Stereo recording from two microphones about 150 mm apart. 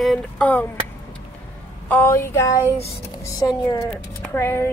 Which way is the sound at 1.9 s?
15° left (ahead or behind).